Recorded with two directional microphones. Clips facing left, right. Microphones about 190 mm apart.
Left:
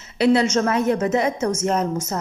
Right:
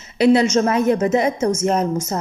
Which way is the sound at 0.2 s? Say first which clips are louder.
Right 3 dB; 15° right (ahead or behind).